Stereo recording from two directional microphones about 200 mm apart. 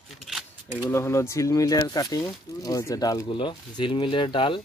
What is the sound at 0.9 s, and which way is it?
Speech, 15° left (ahead or behind).